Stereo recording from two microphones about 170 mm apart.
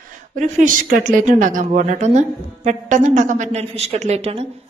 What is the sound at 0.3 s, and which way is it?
A woman's voice, 50° right (ahead or behind).